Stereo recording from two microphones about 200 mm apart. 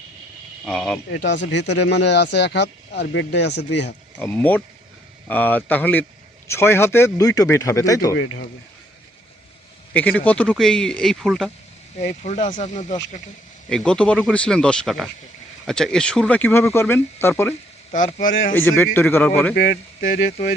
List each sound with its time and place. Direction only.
0.6 s speech: 5° left (ahead or behind)
1.1 s speech: 65° left (ahead or behind)
4.2 s speech: 10° left (ahead or behind)
8.1 s speech: 65° left (ahead or behind)
9.9 s speech: 5° left (ahead or behind)
11.9 s speech: 35° left (ahead or behind)
13.7 s speech: 5° left (ahead or behind)
17.9 s speech: 40° left (ahead or behind)
18.5 s speech: 10° left (ahead or behind)